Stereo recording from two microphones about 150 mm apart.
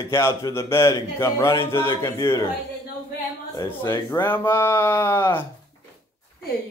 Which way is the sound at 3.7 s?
15° left (ahead or behind).